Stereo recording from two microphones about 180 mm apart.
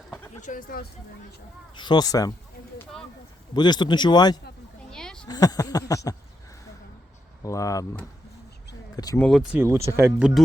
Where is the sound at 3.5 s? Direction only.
25° left (ahead or behind).